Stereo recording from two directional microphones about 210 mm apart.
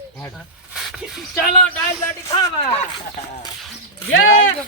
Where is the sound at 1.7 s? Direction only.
15° left (ahead or behind).